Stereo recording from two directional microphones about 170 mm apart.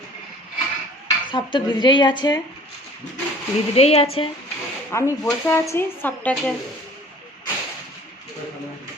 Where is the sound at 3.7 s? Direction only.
35° left (ahead or behind).